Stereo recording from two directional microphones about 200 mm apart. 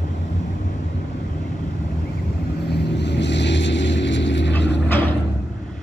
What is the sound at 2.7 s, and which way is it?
Vehicle, 60° left (ahead or behind).